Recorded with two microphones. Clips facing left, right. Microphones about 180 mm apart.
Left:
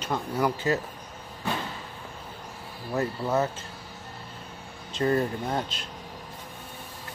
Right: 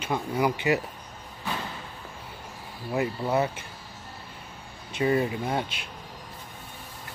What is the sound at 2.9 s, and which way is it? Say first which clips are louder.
Speech: even; 10° right (ahead or behind).